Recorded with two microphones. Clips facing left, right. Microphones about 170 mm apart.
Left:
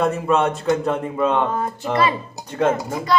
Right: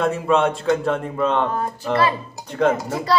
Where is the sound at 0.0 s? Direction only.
Centre (ahead or behind).